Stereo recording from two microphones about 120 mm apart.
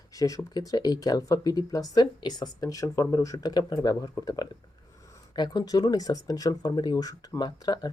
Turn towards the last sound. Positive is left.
turn(degrees=35)  # may be behind; listen again after turning